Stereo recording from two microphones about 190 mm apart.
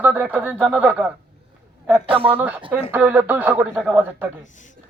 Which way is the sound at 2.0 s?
30° right (ahead or behind).